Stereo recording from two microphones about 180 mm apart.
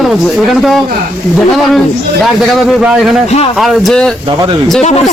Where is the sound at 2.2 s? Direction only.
Centre (ahead or behind).